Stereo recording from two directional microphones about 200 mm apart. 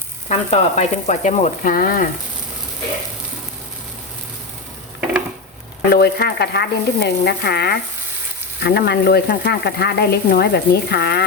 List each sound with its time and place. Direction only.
0.3 s speech: 35° left (ahead or behind)
5.9 s speech: 50° left (ahead or behind)